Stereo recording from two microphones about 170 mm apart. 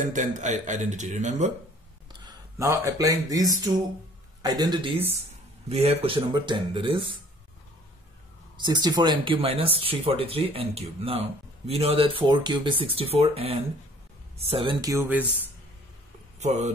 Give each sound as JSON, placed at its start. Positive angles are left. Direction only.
{"t": 0.0, "sound": "a man's voice", "side_deg": -50}
{"t": 2.2, "sound": "speech", "side_deg": -20}
{"t": 8.5, "sound": "speech", "side_deg": -25}
{"t": 16.3, "sound": "speech", "side_deg": -40}